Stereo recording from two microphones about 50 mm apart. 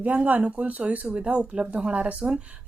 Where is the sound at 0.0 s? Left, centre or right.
Right.